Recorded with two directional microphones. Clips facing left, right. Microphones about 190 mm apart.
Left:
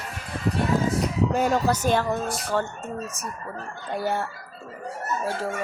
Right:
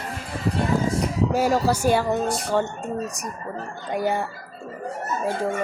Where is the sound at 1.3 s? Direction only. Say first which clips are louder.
Right 3 dB; 5° right (ahead or behind).